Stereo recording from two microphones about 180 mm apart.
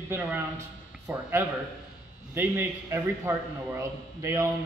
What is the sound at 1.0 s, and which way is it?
A man's voice, 15° right (ahead or behind).